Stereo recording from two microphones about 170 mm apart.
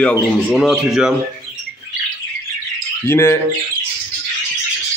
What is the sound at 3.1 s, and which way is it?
Speech, 15° left (ahead or behind).